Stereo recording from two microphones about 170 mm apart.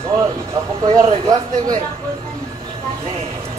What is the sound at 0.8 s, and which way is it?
Speech, 30° right (ahead or behind).